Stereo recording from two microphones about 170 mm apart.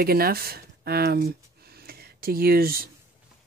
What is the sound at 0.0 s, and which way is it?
Speech, 60° right (ahead or behind).